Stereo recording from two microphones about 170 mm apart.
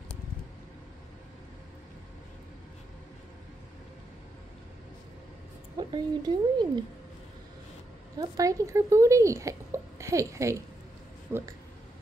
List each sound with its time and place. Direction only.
5.8 s speech: 25° right (ahead or behind)
8.2 s speech: 20° right (ahead or behind)